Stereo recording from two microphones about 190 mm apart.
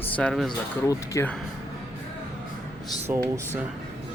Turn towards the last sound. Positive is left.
turn(degrees=-10)  # may be behind; listen again after turning